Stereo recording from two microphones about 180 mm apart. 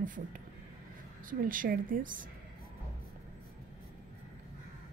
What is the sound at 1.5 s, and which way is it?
Speech, 50° right (ahead or behind).